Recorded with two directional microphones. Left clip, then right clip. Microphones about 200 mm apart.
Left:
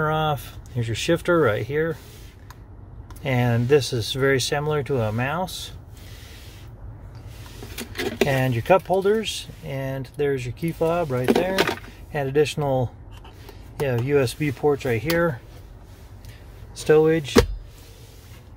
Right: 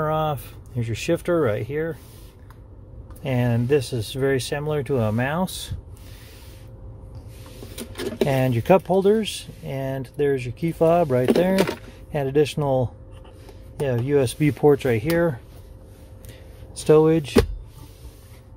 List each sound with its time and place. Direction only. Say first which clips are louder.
0.0 s speech: even; 10° right (ahead or behind)
3.2 s speech: left 1 dB; 10° right (ahead or behind); by 5.8 s 30° right (ahead or behind)
8.3 s speech: right 1 dB; 25° right (ahead or behind)
12.1 s speech: even; 25° right (ahead or behind)
14.6 s speech: right 4 dB; 35° right (ahead or behind)
16.7 s speech: right 1 dB; 20° right (ahead or behind)